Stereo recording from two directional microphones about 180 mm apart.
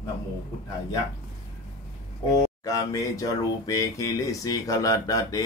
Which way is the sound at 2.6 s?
20° left (ahead or behind).